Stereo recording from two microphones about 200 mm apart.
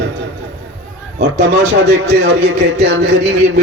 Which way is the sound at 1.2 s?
60° right (ahead or behind).